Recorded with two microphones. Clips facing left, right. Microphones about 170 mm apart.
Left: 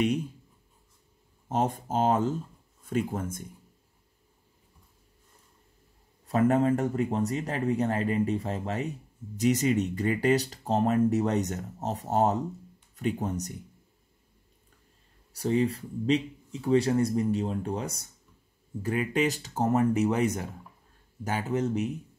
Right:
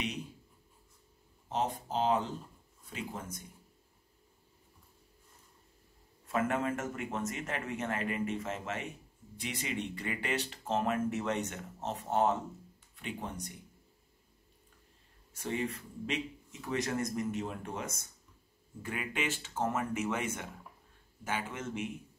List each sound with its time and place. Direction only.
1.5 s speech: 45° left (ahead or behind)
6.2 s speech: 35° left (ahead or behind)
15.3 s speech: 35° left (ahead or behind)